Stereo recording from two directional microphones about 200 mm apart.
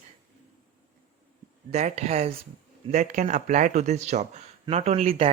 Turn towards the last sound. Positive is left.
turn(degrees=-30)  # may be behind; listen again after turning